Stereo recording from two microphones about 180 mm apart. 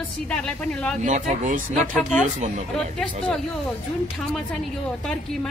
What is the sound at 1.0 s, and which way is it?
Speech, 45° right (ahead or behind).